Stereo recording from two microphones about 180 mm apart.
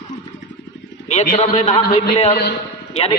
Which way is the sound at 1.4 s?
35° left (ahead or behind).